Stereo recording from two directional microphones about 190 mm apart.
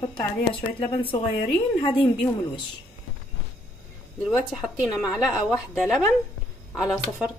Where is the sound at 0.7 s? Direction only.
30° left (ahead or behind).